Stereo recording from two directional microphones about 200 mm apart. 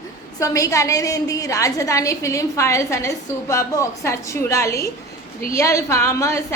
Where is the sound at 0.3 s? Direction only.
15° left (ahead or behind).